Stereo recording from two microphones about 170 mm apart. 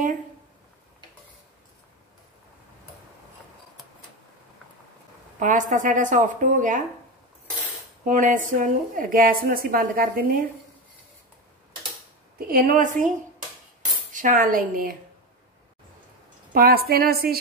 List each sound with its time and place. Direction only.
5.4 s a woman's voice: 50° right (ahead or behind)
8.0 s a woman's voice: 50° right (ahead or behind)
12.4 s a woman's voice: 60° right (ahead or behind)
14.1 s a woman's voice: 50° right (ahead or behind)
16.5 s a woman's voice: 60° right (ahead or behind)